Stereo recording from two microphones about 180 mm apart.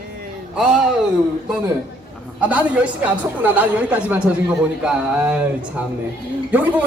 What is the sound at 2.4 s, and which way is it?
A woman's voice, 10° right (ahead or behind).